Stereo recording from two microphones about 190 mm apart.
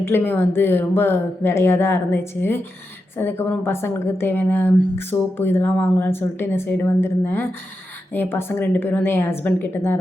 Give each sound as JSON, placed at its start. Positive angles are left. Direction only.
{"t": 0.0, "sound": "a woman's voice", "side_deg": 10}